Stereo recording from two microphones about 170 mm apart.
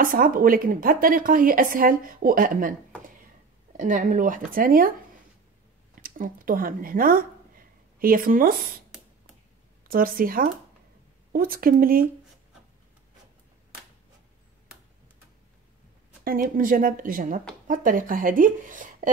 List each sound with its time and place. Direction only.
0.0 s speech: 55° right (ahead or behind)
3.7 s speech: 50° right (ahead or behind)
6.0 s speech: 55° right (ahead or behind)
9.8 s speech: 55° right (ahead or behind)
16.3 s speech: 55° right (ahead or behind)